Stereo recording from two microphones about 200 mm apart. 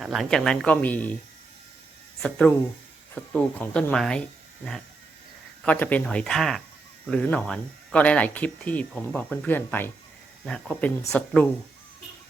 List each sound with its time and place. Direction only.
0.0 s speech: centre (ahead or behind)
2.2 s speech: 5° left (ahead or behind)